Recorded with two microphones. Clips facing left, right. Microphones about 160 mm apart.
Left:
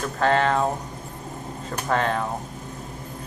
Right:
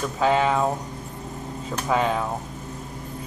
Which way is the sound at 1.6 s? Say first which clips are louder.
Right 1 dB; 5° right (ahead or behind).